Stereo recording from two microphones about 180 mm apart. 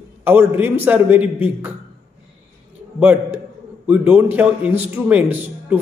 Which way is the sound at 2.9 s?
10° right (ahead or behind).